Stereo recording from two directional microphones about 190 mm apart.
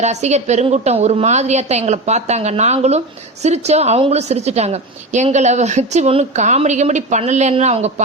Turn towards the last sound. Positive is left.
turn(degrees=-35)  # may be behind; listen again after turning